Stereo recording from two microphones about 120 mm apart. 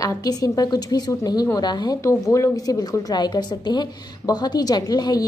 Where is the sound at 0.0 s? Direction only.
30° left (ahead or behind).